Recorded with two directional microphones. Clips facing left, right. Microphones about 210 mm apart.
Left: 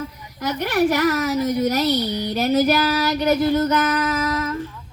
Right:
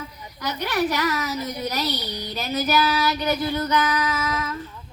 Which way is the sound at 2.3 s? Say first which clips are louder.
Left 6 dB; 50° left (ahead or behind).